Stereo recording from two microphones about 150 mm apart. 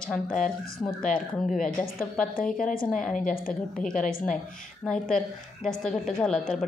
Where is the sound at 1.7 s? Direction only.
10° left (ahead or behind).